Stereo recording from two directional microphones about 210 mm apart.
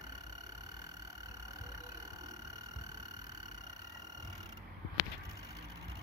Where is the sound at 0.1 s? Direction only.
20° right (ahead or behind).